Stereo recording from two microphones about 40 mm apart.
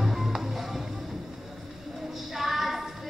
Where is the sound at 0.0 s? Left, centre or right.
Centre.